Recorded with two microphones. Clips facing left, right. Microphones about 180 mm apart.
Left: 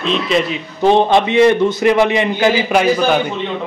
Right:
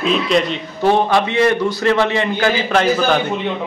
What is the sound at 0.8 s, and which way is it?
A man's voice, 20° left (ahead or behind).